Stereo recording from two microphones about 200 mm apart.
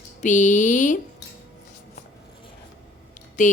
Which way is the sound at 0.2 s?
40° left (ahead or behind).